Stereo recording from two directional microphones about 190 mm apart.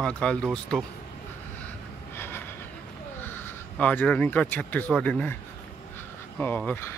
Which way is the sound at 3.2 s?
10° left (ahead or behind).